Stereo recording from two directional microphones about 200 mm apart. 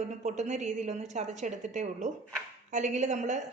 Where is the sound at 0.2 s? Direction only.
35° right (ahead or behind).